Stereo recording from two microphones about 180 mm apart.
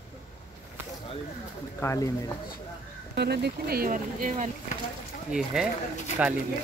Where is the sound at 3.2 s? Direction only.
65° right (ahead or behind); by 4.5 s 45° right (ahead or behind).